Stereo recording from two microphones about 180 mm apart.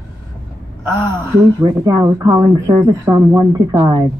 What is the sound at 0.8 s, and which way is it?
Speech, 15° right (ahead or behind).